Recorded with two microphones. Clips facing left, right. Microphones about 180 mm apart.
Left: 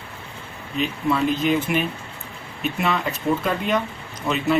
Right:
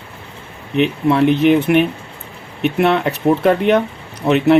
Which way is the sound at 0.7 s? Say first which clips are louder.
Right 8 dB; 65° right (ahead or behind).